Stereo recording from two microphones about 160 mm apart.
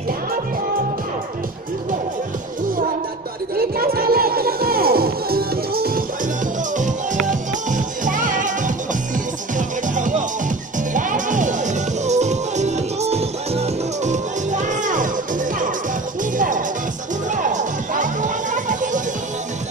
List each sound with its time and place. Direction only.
3.5 s music: 70° right (ahead or behind)
7.2 s music: 55° right (ahead or behind)